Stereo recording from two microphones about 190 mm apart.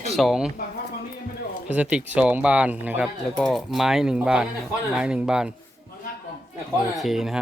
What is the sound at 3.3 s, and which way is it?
Speech, centre (ahead or behind).